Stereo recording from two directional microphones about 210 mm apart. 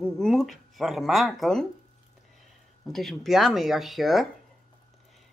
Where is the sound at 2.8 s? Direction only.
Centre (ahead or behind).